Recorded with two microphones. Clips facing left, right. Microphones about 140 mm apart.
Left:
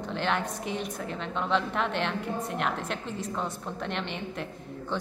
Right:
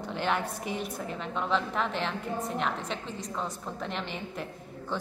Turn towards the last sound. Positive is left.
turn(degrees=0)  # may be behind; listen again after turning